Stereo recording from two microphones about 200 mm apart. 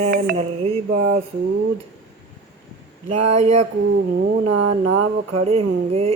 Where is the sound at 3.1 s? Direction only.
35° right (ahead or behind).